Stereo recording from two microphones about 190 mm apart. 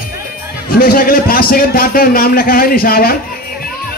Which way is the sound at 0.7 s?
50° left (ahead or behind).